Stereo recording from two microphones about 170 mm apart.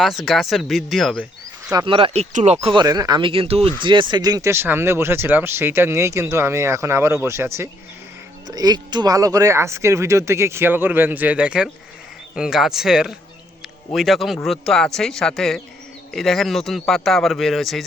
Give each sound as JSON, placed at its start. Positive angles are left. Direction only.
{"t": 0.0, "sound": "speech", "side_deg": 0}
{"t": 1.7, "sound": "speech", "side_deg": -30}
{"t": 2.6, "sound": "speech", "side_deg": -20}